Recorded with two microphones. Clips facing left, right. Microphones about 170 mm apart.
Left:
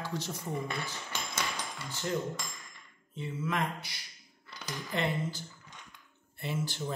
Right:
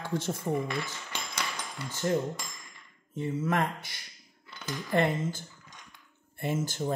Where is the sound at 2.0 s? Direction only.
45° right (ahead or behind).